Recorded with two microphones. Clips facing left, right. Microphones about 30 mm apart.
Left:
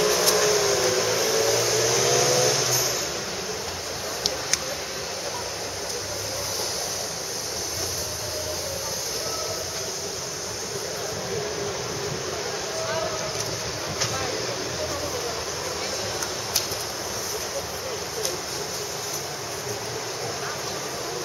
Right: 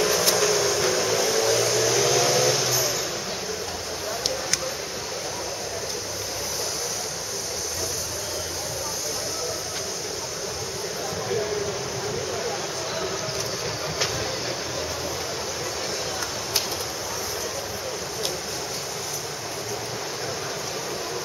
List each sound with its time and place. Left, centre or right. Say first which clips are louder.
0.0 s vehicle: left 1 dB; centre